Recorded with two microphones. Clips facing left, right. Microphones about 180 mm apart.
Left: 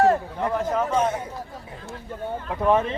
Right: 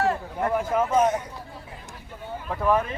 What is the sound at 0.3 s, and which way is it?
Speech, 10° right (ahead or behind).